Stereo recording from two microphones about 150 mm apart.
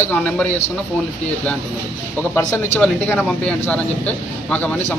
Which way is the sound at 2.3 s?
15° left (ahead or behind).